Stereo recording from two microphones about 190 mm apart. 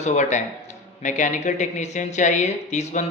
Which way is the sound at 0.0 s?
40° left (ahead or behind).